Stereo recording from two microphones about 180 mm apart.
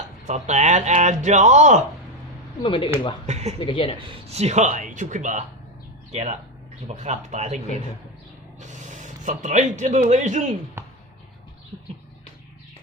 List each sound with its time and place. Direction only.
0.3 s speech: 40° right (ahead or behind)
2.6 s speech: 30° left (ahead or behind)
3.2 s speech: 40° right (ahead or behind)
3.6 s speech: 30° left (ahead or behind)
4.0 s a man's voice: 30° right (ahead or behind)
10.8 s music: 15° right (ahead or behind)